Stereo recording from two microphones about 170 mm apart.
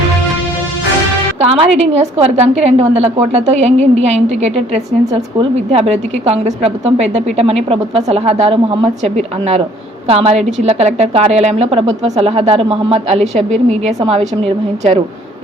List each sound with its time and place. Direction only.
1.4 s a woman's voice: 35° right (ahead or behind)